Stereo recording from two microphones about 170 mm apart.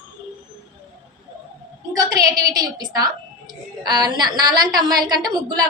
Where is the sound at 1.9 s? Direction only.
25° right (ahead or behind).